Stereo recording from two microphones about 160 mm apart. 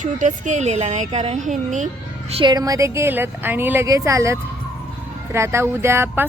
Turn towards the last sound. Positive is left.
turn(degrees=-15)  # may be behind; listen again after turning